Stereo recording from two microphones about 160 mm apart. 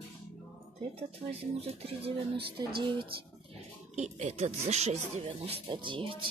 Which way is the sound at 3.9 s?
45° right (ahead or behind).